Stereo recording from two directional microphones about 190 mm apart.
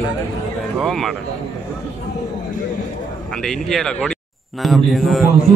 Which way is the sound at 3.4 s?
Centre (ahead or behind).